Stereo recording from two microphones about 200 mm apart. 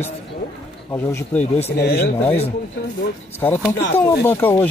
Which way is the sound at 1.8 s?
55° left (ahead or behind).